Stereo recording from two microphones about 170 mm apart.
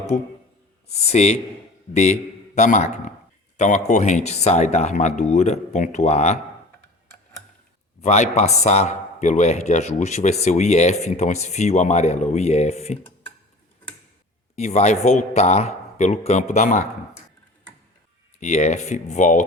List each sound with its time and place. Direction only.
0.1 s speech: 50° left (ahead or behind)
8.0 s speech: 45° left (ahead or behind)
14.5 s speech: 40° left (ahead or behind)
18.3 s speech: 45° left (ahead or behind)